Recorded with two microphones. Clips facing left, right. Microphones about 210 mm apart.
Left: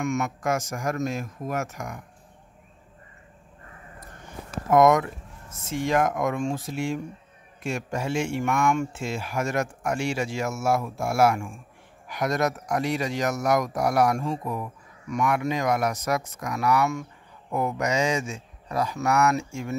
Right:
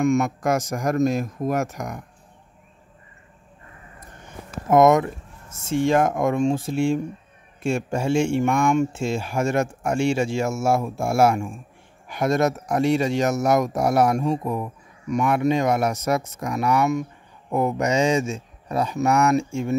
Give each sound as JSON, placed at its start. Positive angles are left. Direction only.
{"t": 0.0, "sound": "speech", "side_deg": -35}
{"t": 4.6, "sound": "a man's voice", "side_deg": -25}